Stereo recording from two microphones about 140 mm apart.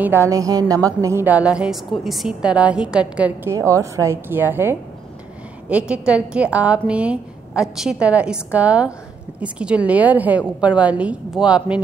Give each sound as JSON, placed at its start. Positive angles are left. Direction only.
{"t": 0.0, "sound": "a woman's voice", "side_deg": -15}
{"t": 3.5, "sound": "a woman's voice", "side_deg": -20}